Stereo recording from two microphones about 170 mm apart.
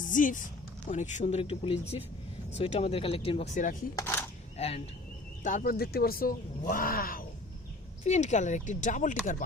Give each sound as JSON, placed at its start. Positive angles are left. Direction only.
{"t": 0.1, "sound": "speech", "side_deg": 50}
{"t": 3.9, "sound": "speech", "side_deg": 15}
{"t": 4.5, "sound": "speech", "side_deg": 40}
{"t": 5.4, "sound": "speech", "side_deg": 50}
{"t": 8.0, "sound": "speech", "side_deg": 45}